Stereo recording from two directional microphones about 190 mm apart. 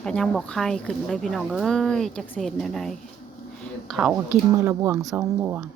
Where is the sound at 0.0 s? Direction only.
5° left (ahead or behind).